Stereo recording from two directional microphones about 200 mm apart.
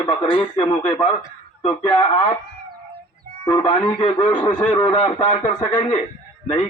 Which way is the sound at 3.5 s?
20° left (ahead or behind).